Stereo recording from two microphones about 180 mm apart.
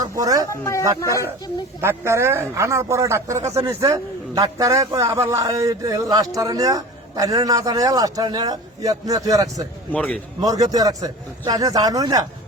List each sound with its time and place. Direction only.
0.0 s speech: 20° right (ahead or behind)
0.5 s speech: 15° left (ahead or behind)
1.8 s a man's voice: 15° right (ahead or behind)
9.9 s speech: 5° left (ahead or behind)
10.4 s a man's voice: 20° right (ahead or behind)